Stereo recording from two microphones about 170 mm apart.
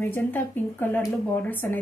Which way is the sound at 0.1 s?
10° left (ahead or behind).